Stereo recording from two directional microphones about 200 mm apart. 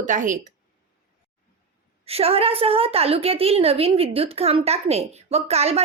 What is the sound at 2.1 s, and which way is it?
A woman's voice, 30° right (ahead or behind).